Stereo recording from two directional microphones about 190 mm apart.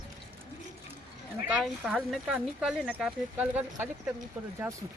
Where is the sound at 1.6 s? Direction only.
Centre (ahead or behind).